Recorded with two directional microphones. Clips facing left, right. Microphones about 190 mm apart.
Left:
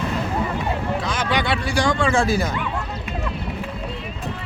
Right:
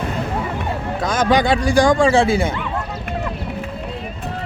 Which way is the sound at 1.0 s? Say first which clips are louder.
Right 10 dB; 45° right (ahead or behind).